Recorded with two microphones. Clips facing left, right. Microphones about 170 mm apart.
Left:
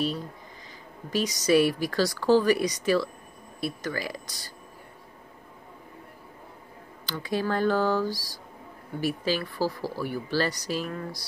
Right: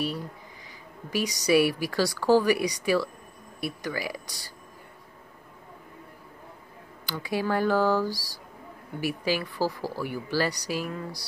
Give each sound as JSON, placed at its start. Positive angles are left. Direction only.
{"t": 1.1, "sound": "speech", "side_deg": -15}
{"t": 7.1, "sound": "speech", "side_deg": -10}
{"t": 8.1, "sound": "speech", "side_deg": 15}
{"t": 9.0, "sound": "speech", "side_deg": -15}